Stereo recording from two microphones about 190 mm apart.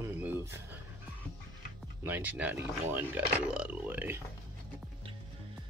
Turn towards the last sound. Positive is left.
turn(degrees=-10)  # may be behind; listen again after turning